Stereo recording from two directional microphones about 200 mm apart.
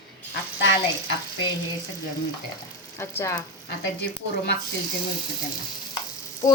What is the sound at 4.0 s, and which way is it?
Speech, 60° left (ahead or behind).